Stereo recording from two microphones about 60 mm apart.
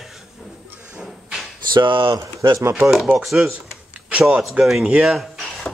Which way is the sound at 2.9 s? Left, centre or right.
Centre.